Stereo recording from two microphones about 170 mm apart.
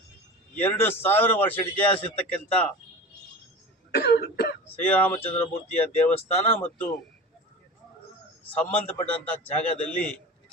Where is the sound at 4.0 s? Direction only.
70° left (ahead or behind).